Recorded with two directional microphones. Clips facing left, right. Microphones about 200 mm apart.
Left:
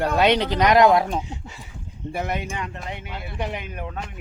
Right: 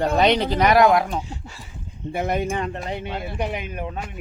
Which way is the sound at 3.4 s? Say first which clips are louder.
Even; 20° right (ahead or behind).